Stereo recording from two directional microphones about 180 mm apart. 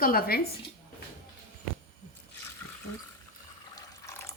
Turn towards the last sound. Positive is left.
turn(degrees=15)  # may be behind; listen again after turning